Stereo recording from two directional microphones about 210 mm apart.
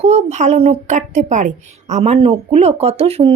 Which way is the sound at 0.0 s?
30° right (ahead or behind).